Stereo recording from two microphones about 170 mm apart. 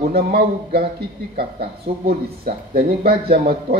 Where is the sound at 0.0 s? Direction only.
65° right (ahead or behind).